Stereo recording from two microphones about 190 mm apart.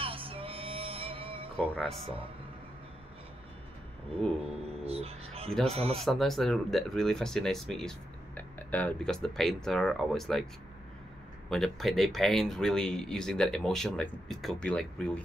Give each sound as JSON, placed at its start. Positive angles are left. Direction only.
{"t": 0.0, "sound": "music", "side_deg": -30}
{"t": 1.6, "sound": "speech", "side_deg": 5}
{"t": 4.8, "sound": "a sound", "side_deg": -30}
{"t": 5.7, "sound": "speech", "side_deg": -30}
{"t": 5.9, "sound": "speech", "side_deg": 0}